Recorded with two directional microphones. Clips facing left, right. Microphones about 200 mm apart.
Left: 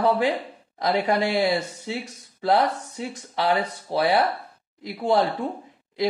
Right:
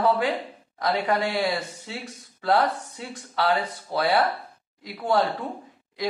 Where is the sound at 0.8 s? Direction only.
20° left (ahead or behind).